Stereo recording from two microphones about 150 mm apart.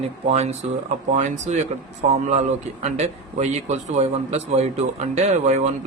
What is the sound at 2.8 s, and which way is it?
A man's voice, 50° right (ahead or behind).